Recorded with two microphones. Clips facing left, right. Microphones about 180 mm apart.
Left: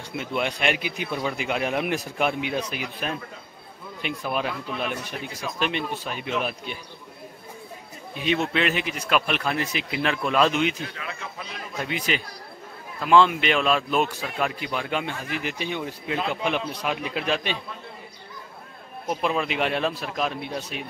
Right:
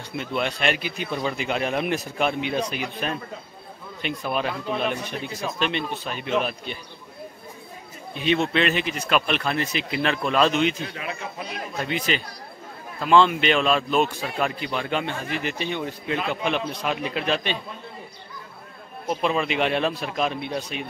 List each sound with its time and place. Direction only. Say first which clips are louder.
0.2 s a man's voice: right 1 dB; 10° left (ahead or behind)
8.5 s a man's voice: right 2 dB; 10° left (ahead or behind)
10.8 s a man's voice: right 3 dB; 20° right (ahead or behind)
11.8 s a man's voice: right 1 dB; 10° left (ahead or behind)
19.0 s a man's voice: right 2 dB; 5° left (ahead or behind)